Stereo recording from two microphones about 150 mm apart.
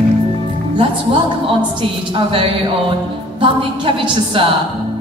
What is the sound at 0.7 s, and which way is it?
A woman's voice, 35° right (ahead or behind).